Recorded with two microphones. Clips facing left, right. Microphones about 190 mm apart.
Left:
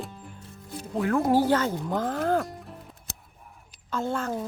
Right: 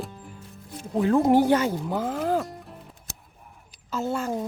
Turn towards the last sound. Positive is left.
turn(degrees=-10)  # may be behind; listen again after turning